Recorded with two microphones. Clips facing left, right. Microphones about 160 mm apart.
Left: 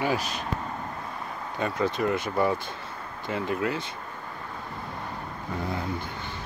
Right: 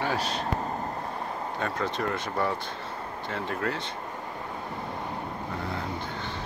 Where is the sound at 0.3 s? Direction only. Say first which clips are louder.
Right 3 dB; 35° right (ahead or behind).